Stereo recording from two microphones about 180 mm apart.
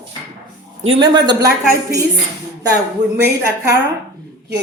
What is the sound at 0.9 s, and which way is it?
Speech, 25° right (ahead or behind).